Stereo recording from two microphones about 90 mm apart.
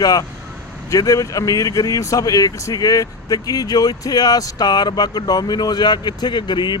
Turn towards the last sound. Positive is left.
turn(degrees=55)  # may be behind; listen again after turning